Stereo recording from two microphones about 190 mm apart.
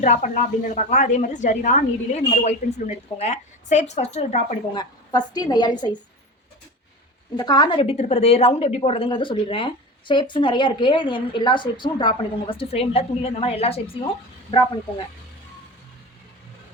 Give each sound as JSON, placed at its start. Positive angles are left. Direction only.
{"t": 0.0, "sound": "a woman's voice", "side_deg": 40}
{"t": 4.7, "sound": "a woman's voice", "side_deg": 20}
{"t": 7.3, "sound": "a woman's voice", "side_deg": 20}